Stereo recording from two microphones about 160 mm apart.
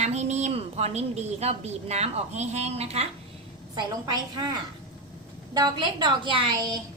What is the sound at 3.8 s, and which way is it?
A woman's voice, 25° right (ahead or behind).